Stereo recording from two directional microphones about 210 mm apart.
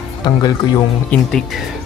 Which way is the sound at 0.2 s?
20° left (ahead or behind).